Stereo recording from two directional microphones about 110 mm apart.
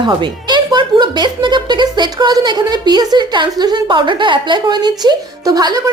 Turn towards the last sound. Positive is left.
turn(degrees=-35)  # may be behind; listen again after turning